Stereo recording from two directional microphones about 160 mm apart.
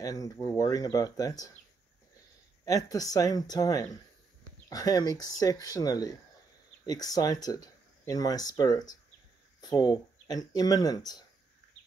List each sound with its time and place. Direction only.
0.0 s speech: 20° left (ahead or behind)
2.6 s speech: 20° left (ahead or behind)